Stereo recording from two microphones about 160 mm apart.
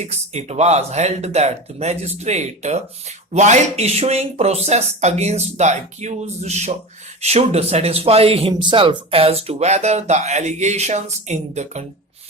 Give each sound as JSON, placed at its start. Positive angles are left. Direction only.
{"t": 0.0, "sound": "speech", "side_deg": -45}